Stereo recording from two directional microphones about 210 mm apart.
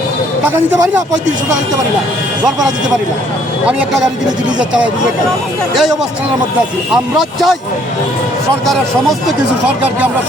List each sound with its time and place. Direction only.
0.4 s speech: 15° right (ahead or behind)
2.4 s speech: 15° right (ahead or behind)
3.7 s speech: 5° right (ahead or behind)
6.9 s speech: centre (ahead or behind)
8.6 s speech: centre (ahead or behind)